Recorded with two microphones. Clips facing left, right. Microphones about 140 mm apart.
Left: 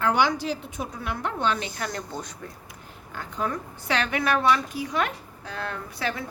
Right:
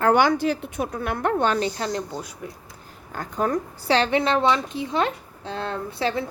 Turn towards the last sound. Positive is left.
turn(degrees=-30)  # may be behind; listen again after turning